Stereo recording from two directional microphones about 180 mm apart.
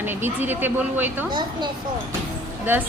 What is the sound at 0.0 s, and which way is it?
Speech, 10° right (ahead or behind).